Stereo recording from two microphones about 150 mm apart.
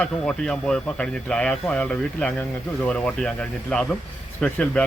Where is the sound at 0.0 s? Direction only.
5° left (ahead or behind).